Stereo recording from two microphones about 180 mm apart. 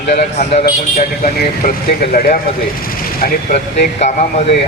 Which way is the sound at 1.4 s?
50° left (ahead or behind).